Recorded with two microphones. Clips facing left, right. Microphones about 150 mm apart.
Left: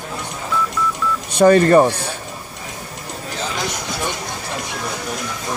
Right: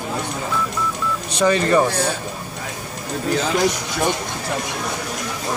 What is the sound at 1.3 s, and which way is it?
Speech, 50° left (ahead or behind).